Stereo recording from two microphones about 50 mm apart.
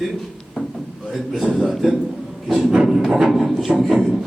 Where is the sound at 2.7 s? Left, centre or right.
Centre.